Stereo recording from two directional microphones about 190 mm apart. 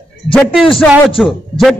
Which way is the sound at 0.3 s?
5° left (ahead or behind).